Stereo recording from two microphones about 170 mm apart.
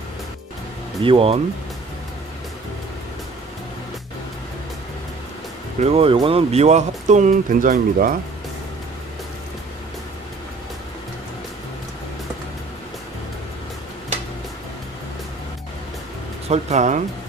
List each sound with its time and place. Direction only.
1.0 s speech: 35° right (ahead or behind)
5.8 s speech: 35° right (ahead or behind); by 8.2 s 55° right (ahead or behind)
16.4 s speech: 40° right (ahead or behind)